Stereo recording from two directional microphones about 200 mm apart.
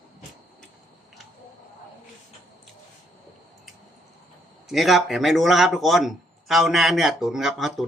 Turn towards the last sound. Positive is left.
turn(degrees=0)  # may be behind; listen again after turning